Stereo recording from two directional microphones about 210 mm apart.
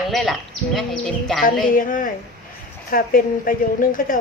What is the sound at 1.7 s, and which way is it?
A woman's voice, 40° left (ahead or behind).